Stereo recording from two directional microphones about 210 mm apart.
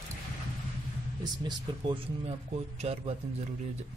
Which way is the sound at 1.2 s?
20° right (ahead or behind).